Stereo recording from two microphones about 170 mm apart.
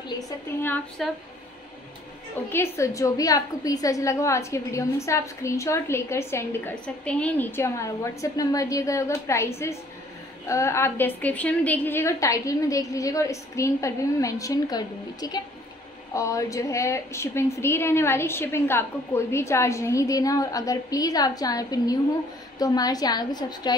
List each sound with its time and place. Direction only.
0.2 s a woman's voice: 10° left (ahead or behind)
2.5 s a woman's voice: 15° left (ahead or behind)